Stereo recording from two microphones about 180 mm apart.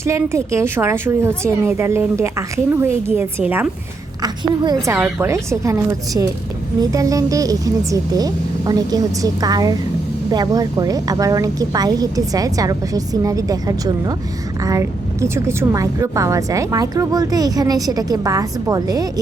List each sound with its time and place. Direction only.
0.0 s a woman's voice: 15° right (ahead or behind)
4.2 s a woman's voice: 20° right (ahead or behind)